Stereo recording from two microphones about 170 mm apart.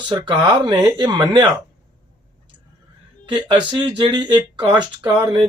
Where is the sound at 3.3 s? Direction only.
25° right (ahead or behind).